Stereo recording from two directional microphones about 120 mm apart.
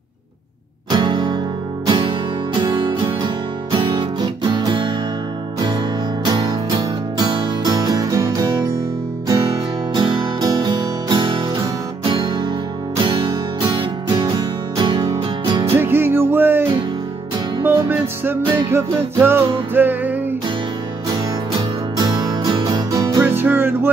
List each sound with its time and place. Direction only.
0.8 s music: 40° right (ahead or behind)
6.2 s music: 40° right (ahead or behind)
9.9 s music: 40° right (ahead or behind)
14.8 s music: 40° right (ahead or behind)
15.7 s music: 20° right (ahead or behind)
17.6 s music: 20° right (ahead or behind)
21.1 s music: 35° right (ahead or behind)
23.2 s music: 15° right (ahead or behind)